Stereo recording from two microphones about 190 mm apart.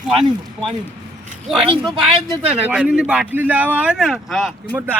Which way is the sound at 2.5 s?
5° right (ahead or behind).